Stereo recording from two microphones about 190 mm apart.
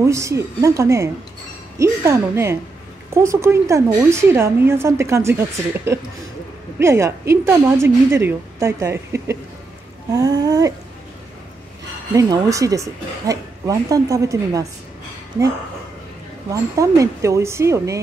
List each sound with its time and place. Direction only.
0.0 s a woman's voice: 15° right (ahead or behind)
6.8 s a woman's voice: 15° right (ahead or behind)
10.1 s a sound: 20° right (ahead or behind)
12.1 s a woman's voice: 15° right (ahead or behind)
16.7 s a woman's voice: 15° right (ahead or behind)